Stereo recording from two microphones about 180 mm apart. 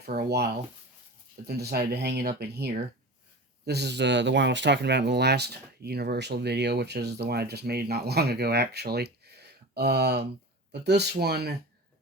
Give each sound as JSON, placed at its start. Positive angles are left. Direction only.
{"t": 0.0, "sound": "speech", "side_deg": -60}